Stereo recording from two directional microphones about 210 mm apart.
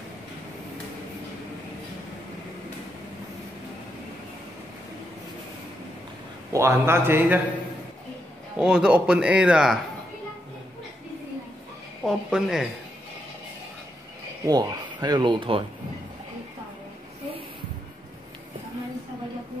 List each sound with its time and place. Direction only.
6.5 s a man's voice: 10° right (ahead or behind)
8.5 s a man's voice: 5° right (ahead or behind)
12.0 s a man's voice: centre (ahead or behind)
14.4 s speech: 20° right (ahead or behind)